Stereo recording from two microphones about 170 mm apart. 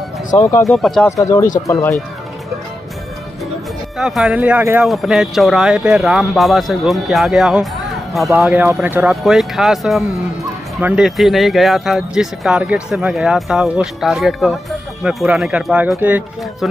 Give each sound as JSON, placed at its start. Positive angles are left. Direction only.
{"t": 0.4, "sound": "speech", "side_deg": 15}
{"t": 0.7, "sound": "speech", "side_deg": 0}
{"t": 1.0, "sound": "speech", "side_deg": 15}
{"t": 4.0, "sound": "speech", "side_deg": 0}
{"t": 8.4, "sound": "speech", "side_deg": -15}